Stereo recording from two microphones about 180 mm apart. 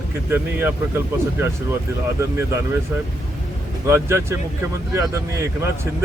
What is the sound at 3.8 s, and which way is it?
Speech, 15° right (ahead or behind).